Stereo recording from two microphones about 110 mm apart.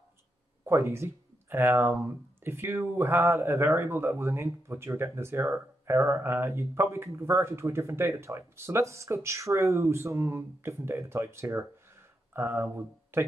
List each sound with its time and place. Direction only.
0.7 s speech: 25° right (ahead or behind)